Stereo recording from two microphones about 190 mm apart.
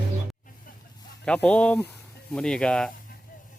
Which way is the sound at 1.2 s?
5° left (ahead or behind).